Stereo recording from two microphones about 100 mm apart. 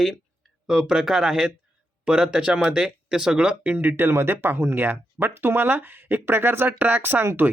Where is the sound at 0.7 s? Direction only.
5° right (ahead or behind).